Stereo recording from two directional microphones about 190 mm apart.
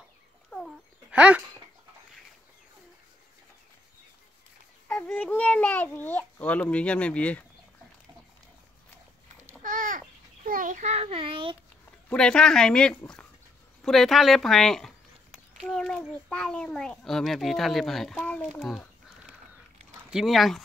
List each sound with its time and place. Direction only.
0.5 s dog: 5° left (ahead or behind)
1.1 s speech: 5° right (ahead or behind)
4.8 s a child's voice: 5° left (ahead or behind)
9.6 s babbling: 45° right (ahead or behind); by 11.5 s 25° right (ahead or behind)
12.1 s a child's voice: 5° left (ahead or behind)
20.1 s a child's voice: centre (ahead or behind)